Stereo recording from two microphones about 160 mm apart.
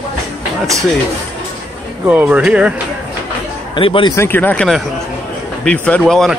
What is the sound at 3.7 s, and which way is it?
Speech, 30° left (ahead or behind).